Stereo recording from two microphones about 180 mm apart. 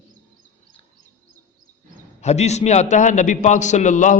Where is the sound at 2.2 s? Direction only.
40° left (ahead or behind).